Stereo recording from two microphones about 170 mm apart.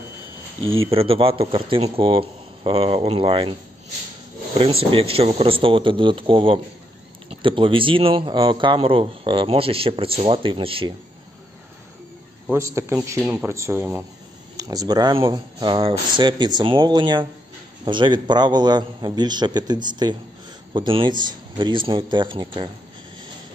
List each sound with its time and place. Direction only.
0.7 s a man's voice: 35° right (ahead or behind)
4.6 s a man's voice: 35° right (ahead or behind)
12.4 s a man's voice: 15° right (ahead or behind)